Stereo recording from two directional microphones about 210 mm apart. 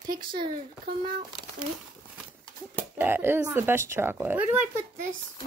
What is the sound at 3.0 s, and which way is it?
Speech, 10° right (ahead or behind).